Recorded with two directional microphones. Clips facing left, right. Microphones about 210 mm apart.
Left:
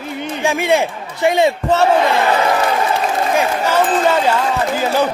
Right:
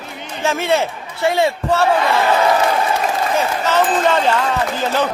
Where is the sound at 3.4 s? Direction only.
10° left (ahead or behind).